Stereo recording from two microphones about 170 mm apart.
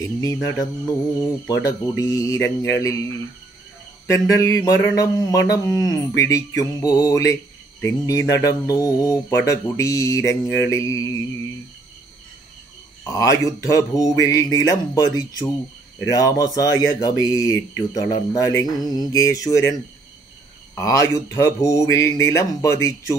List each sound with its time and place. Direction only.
0.0 s mantra: 20° left (ahead or behind)
4.1 s mantra: 20° left (ahead or behind)
13.0 s mantra: 20° left (ahead or behind)
20.7 s mantra: 20° left (ahead or behind)